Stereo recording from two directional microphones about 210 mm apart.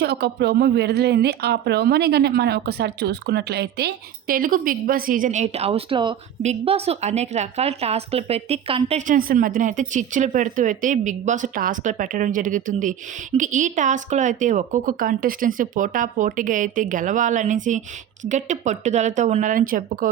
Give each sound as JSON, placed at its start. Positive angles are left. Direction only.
{"t": 0.0, "sound": "a woman's voice", "side_deg": -50}